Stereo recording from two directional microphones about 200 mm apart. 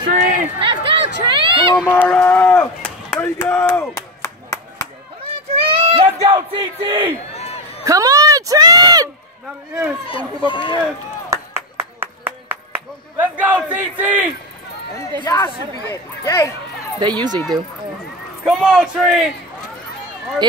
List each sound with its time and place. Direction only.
0.0 s chatter: 45° right (ahead or behind)
0.6 s chatter: 25° right (ahead or behind)
1.2 s speech: 25° right (ahead or behind)
1.9 s speech: 10° left (ahead or behind)
3.9 s clapping: 15° left (ahead or behind)
5.5 s a sound: 30° right (ahead or behind)
7.3 s a sound: 30° left (ahead or behind)
7.8 s speech: 15° right (ahead or behind)
10.0 s speech: 25° left (ahead or behind)
11.2 s clapping: 10° right (ahead or behind)
15.2 s speech: 15° left (ahead or behind)
17.0 s speech: 20° right (ahead or behind)
18.4 s speech: centre (ahead or behind)